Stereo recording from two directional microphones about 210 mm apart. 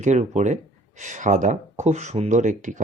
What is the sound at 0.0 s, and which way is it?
Speech, 35° right (ahead or behind).